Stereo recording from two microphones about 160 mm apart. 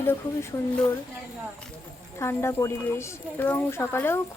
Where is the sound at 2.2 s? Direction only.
15° left (ahead or behind).